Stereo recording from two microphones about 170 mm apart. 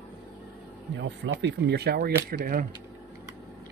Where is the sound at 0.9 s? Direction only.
90° right; by 2.1 s 70° right (ahead or behind).